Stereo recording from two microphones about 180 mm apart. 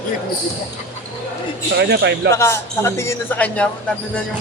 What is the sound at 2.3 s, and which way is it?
A man's voice, 15° left (ahead or behind).